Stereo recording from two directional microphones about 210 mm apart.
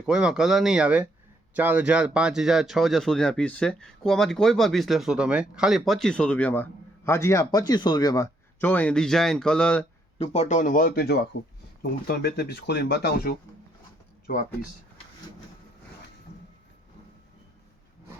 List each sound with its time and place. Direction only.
0.0 s speech: 5° right (ahead or behind)
10.2 s speech: 30° left (ahead or behind); by 13.3 s 50° left (ahead or behind)